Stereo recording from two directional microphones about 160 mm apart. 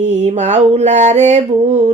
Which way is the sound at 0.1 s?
45° right (ahead or behind).